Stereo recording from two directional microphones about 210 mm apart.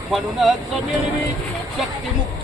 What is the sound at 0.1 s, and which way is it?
Speech, centre (ahead or behind).